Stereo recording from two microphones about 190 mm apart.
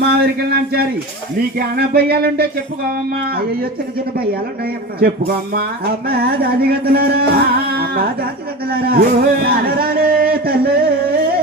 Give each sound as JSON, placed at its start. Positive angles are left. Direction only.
{"t": 0.0, "sound": "music", "side_deg": -60}
{"t": 3.2, "sound": "speech", "side_deg": -50}
{"t": 6.1, "sound": "music", "side_deg": -55}
{"t": 8.7, "sound": "a sound", "side_deg": -55}